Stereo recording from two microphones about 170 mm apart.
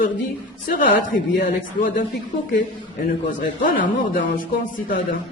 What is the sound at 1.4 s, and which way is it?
Speech, 55° left (ahead or behind).